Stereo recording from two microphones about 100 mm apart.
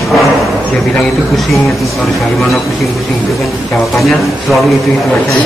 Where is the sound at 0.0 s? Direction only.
Centre (ahead or behind).